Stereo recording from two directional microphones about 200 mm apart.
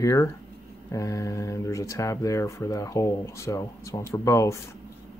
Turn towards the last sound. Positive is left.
turn(degrees=15)  # may be behind; listen again after turning